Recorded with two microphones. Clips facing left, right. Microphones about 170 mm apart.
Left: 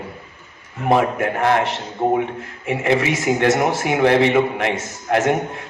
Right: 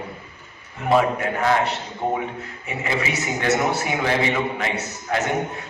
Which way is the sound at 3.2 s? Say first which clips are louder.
Left 5 dB; 65° left (ahead or behind).